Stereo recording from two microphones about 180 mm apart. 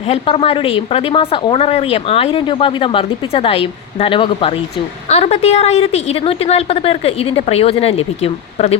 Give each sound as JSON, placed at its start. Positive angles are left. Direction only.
{"t": 0.1, "sound": "speech", "side_deg": 30}